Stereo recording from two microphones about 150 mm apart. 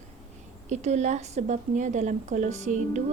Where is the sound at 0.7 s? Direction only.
50° right (ahead or behind).